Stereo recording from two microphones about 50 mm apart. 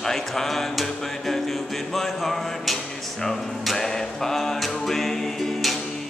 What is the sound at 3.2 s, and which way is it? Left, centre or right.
Music, centre.